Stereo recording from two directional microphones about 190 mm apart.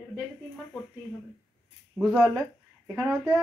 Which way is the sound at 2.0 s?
5° right (ahead or behind).